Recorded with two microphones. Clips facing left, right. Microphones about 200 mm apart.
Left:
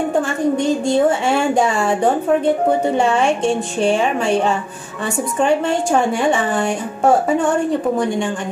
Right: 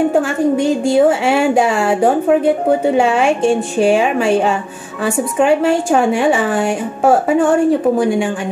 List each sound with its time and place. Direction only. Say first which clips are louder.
0.1 s a woman's voice: right 3 dB; 5° right (ahead or behind)